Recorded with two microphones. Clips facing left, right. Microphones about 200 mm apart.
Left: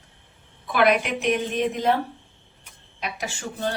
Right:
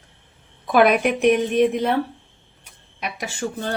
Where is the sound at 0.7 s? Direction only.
50° right (ahead or behind).